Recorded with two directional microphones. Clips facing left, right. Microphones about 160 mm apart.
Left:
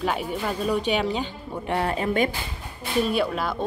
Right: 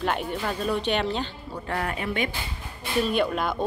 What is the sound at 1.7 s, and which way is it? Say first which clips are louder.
Speech: left 5 dB; 30° left (ahead or behind).